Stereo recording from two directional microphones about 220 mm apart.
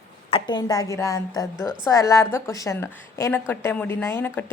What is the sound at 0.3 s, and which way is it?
A woman's voice, 20° left (ahead or behind).